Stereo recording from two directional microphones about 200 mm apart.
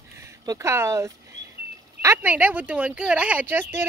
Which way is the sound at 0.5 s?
15° right (ahead or behind).